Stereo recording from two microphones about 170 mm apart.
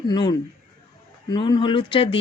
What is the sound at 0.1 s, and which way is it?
Speech, 25° left (ahead or behind).